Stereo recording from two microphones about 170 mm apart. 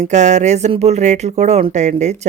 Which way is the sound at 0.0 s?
45° right (ahead or behind).